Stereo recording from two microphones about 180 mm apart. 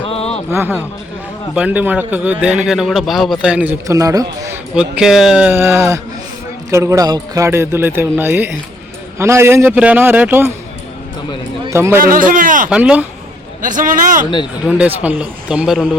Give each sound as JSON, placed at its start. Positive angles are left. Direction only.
{"t": 0.0, "sound": "a sound", "side_deg": 35}
{"t": 1.5, "sound": "a man's voice", "side_deg": -10}
{"t": 4.7, "sound": "a man's voice", "side_deg": -5}
{"t": 11.7, "sound": "a man's voice", "side_deg": -15}
{"t": 11.9, "sound": "speech", "side_deg": -50}
{"t": 12.7, "sound": "a man's voice", "side_deg": -5}
{"t": 13.6, "sound": "speech", "side_deg": -45}
{"t": 14.7, "sound": "a man's voice", "side_deg": -10}